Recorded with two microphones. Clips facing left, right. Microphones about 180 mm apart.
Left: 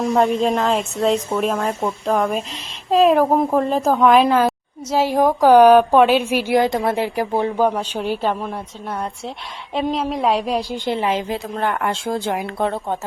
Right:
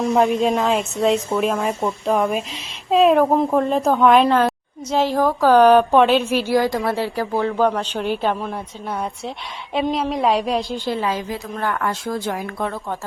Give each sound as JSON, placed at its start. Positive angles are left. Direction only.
{"t": 0.0, "sound": "a woman's voice", "side_deg": 0}
{"t": 5.0, "sound": "a woman's voice", "side_deg": 15}